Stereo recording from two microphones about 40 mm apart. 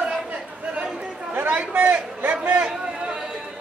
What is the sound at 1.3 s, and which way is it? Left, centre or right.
Speech, right.